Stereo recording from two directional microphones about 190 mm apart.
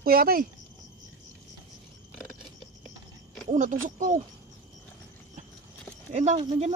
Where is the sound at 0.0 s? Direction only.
50° right (ahead or behind).